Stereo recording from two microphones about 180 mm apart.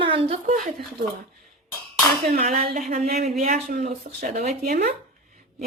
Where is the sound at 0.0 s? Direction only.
30° right (ahead or behind).